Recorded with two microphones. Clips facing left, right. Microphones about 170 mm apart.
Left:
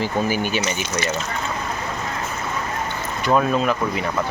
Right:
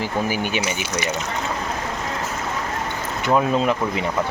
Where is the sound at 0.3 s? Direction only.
15° right (ahead or behind).